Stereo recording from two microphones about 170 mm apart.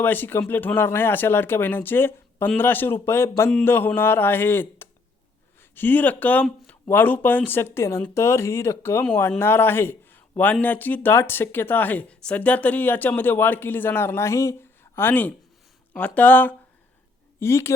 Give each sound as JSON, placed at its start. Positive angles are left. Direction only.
{"t": 0.0, "sound": "speech", "side_deg": 10}